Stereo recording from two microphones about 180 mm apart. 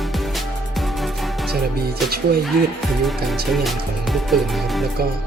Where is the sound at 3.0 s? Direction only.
Centre (ahead or behind).